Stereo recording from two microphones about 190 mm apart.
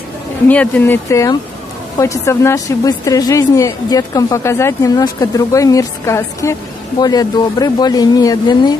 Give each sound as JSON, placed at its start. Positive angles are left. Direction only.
{"t": 0.5, "sound": "a woman's voice", "side_deg": 10}